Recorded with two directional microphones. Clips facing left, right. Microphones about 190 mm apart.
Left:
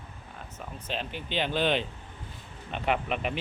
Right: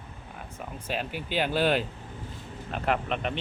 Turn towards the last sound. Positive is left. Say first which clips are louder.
# right 1 dB
turn(degrees=5)  # may be behind; listen again after turning